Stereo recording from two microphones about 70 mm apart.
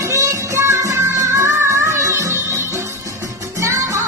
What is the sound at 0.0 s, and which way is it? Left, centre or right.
Music, right.